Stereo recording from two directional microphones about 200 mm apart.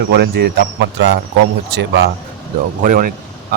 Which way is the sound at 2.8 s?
45° right (ahead or behind).